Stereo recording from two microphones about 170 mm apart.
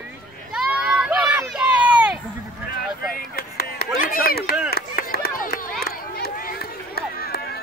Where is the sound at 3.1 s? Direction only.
60° left (ahead or behind).